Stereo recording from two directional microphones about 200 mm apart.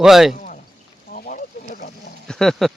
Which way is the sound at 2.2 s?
5° left (ahead or behind).